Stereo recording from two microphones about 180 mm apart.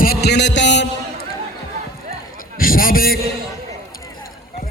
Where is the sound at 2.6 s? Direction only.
55° left (ahead or behind).